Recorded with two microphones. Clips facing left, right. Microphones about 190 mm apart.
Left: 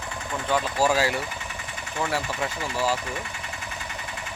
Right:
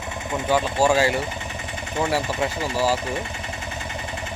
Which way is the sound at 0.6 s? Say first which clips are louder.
Right 3 dB; 25° right (ahead or behind).